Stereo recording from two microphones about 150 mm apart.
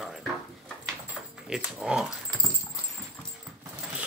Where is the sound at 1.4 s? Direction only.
5° right (ahead or behind).